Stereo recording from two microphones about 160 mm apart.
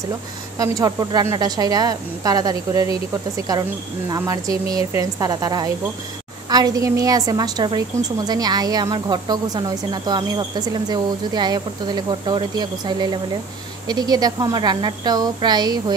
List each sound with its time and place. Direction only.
0.6 s speech: 25° right (ahead or behind)